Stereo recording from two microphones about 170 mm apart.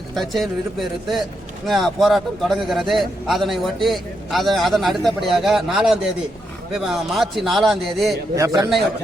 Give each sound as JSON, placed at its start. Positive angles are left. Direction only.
{"t": 0.1, "sound": "a man's voice", "side_deg": 0}
{"t": 8.4, "sound": "a man's voice", "side_deg": -20}